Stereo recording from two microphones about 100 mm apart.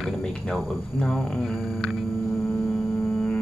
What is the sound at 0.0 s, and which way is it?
Speech, 10° left (ahead or behind).